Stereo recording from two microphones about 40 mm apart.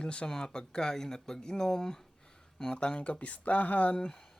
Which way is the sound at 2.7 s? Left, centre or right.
Left.